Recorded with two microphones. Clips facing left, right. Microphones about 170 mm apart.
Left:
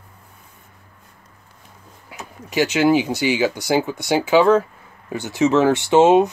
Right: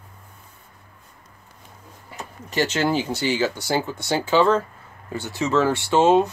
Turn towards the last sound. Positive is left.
turn(degrees=20)  # may be behind; listen again after turning